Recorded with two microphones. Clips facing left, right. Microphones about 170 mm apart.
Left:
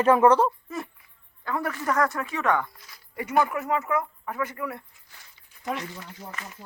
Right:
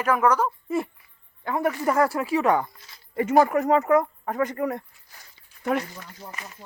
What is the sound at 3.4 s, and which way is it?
Speech, 40° right (ahead or behind).